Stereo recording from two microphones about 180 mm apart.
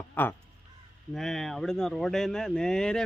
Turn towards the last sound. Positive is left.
turn(degrees=5)  # may be behind; listen again after turning